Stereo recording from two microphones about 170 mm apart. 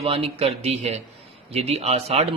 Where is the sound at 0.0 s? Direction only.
35° right (ahead or behind).